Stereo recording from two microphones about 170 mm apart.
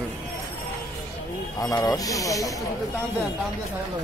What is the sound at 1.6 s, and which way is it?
Speech, 20° left (ahead or behind).